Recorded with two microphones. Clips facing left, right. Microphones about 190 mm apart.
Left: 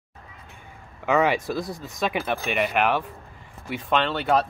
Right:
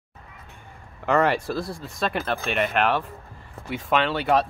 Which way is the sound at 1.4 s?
15° left (ahead or behind).